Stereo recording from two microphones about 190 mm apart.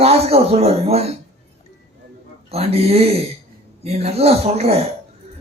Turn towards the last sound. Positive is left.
turn(degrees=-35)  # may be behind; listen again after turning